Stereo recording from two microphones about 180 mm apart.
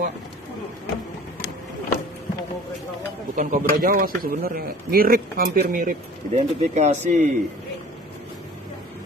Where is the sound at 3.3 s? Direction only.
45° right (ahead or behind).